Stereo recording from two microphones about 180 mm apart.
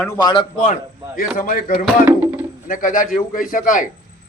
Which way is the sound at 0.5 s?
40° left (ahead or behind).